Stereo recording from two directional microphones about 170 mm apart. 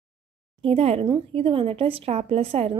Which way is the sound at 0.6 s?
35° right (ahead or behind).